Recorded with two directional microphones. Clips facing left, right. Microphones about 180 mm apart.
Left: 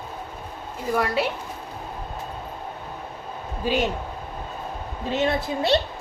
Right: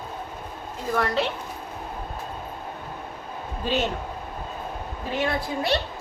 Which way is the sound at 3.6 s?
10° left (ahead or behind).